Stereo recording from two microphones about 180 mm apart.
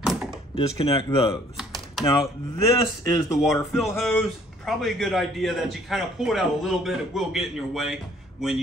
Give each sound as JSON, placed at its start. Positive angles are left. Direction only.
{"t": 0.0, "sound": "door", "side_deg": 0}
{"t": 0.6, "sound": "speech", "side_deg": 30}
{"t": 2.7, "sound": "speech", "side_deg": 20}
{"t": 3.3, "sound": "a man's voice", "side_deg": 0}